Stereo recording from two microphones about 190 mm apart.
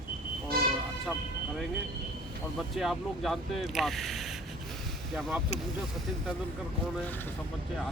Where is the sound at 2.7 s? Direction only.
Centre (ahead or behind).